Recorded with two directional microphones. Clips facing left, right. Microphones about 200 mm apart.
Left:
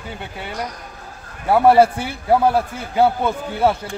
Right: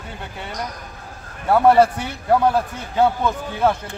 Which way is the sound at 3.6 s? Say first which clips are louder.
Left 1 dB; 5° left (ahead or behind).